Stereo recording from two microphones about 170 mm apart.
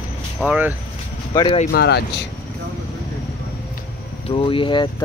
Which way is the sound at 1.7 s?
70° left (ahead or behind).